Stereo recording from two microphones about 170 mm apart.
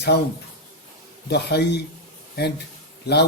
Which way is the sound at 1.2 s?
80° left.